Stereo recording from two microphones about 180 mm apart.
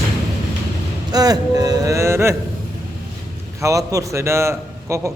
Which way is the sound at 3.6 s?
20° right (ahead or behind).